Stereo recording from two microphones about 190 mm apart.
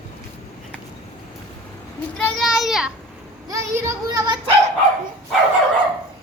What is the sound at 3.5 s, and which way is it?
A child's voice, 15° right (ahead or behind).